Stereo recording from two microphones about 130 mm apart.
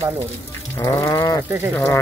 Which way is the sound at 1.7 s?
15° left (ahead or behind).